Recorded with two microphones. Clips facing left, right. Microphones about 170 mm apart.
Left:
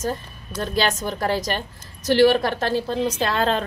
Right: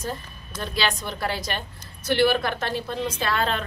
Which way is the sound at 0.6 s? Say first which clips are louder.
Left 4 dB; 45° left (ahead or behind).